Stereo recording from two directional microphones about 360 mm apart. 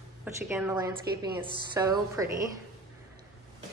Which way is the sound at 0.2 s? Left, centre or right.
Centre.